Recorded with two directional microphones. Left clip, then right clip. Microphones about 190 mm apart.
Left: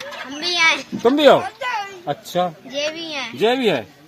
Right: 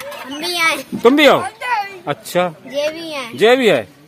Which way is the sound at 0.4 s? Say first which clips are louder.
Even; 45° right (ahead or behind).